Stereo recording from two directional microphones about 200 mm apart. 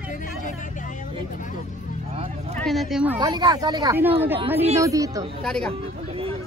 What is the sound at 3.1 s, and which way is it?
Speech, 20° right (ahead or behind).